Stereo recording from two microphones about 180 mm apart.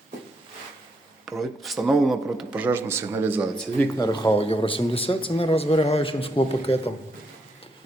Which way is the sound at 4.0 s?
25° left (ahead or behind).